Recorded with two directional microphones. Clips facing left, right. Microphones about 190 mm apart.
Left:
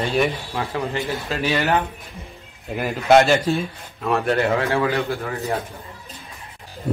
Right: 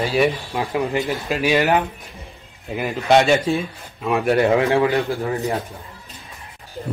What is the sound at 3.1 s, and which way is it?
Speech, centre (ahead or behind).